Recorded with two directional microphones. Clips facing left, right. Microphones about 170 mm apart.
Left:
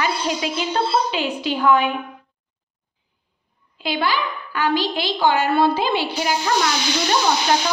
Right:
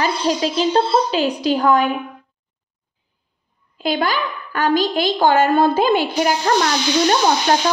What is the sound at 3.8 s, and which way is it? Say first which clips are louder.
A woman's voice: right 2 dB; 45° right (ahead or behind).